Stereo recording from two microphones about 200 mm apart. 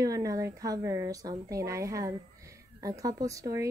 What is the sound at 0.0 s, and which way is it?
A woman's voice, 15° right (ahead or behind).